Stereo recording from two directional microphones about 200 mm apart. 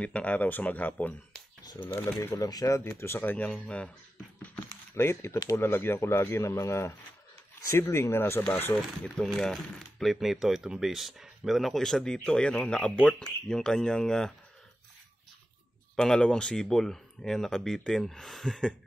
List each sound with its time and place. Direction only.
0.0 s speech: 5° left (ahead or behind)
1.6 s a sound: 20° left (ahead or behind)
1.9 s speech: 10° left (ahead or behind)
4.9 s speech: 10° left (ahead or behind)
16.0 s speech: 5° left (ahead or behind)